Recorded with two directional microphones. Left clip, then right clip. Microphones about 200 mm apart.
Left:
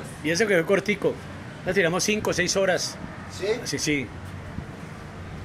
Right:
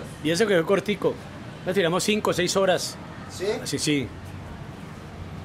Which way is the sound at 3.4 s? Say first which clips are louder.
Left 1 dB; 55° right (ahead or behind).